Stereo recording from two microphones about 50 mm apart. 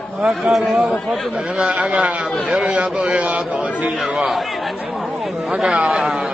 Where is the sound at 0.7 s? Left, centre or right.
Centre.